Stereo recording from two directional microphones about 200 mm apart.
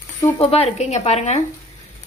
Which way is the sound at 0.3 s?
30° left (ahead or behind).